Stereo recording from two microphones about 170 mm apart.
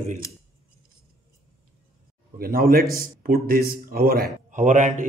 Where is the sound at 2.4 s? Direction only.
60° right (ahead or behind).